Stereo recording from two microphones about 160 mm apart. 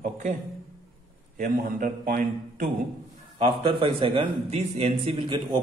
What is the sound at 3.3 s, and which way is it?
A man's voice, 35° right (ahead or behind).